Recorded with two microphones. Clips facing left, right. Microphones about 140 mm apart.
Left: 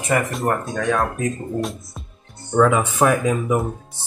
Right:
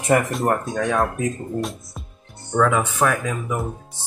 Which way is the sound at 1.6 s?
Centre (ahead or behind).